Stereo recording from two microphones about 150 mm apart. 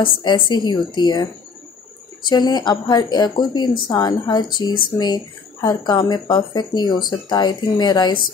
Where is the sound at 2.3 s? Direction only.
30° left (ahead or behind).